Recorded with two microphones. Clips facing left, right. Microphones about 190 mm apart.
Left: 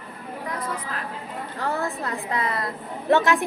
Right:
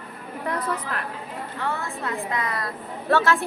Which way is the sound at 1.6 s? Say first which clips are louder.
Left 3 dB; 40° left (ahead or behind).